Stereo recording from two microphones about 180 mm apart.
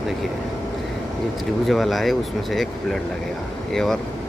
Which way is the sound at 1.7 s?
Centre (ahead or behind).